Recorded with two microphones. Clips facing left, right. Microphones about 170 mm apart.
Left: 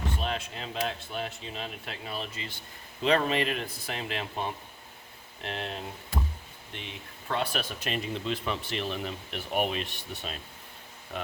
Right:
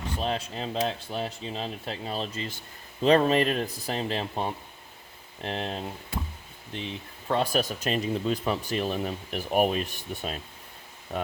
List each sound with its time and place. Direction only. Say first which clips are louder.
0.2 s speech: right 4 dB; 35° right (ahead or behind)
7.3 s speech: right 5 dB; 40° right (ahead or behind)